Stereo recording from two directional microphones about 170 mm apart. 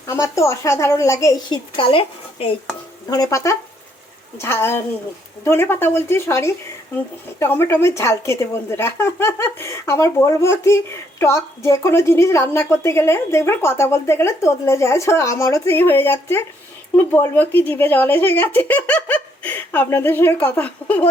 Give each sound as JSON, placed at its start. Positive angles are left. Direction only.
{"t": 0.1, "sound": "a woman's voice", "side_deg": 15}
{"t": 3.1, "sound": "a woman's voice", "side_deg": 20}